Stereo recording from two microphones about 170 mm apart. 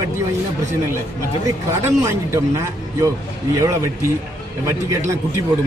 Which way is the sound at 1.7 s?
15° right (ahead or behind).